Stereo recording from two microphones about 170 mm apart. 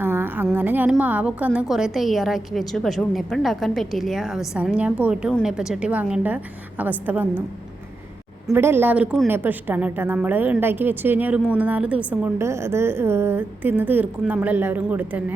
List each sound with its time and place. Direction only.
0.0 s a sound: 10° right (ahead or behind)
0.5 s a woman's voice: 10° right (ahead or behind)
8.5 s a woman's voice: 15° right (ahead or behind)